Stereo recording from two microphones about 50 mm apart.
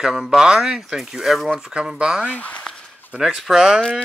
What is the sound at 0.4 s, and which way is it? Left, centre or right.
Speech, centre.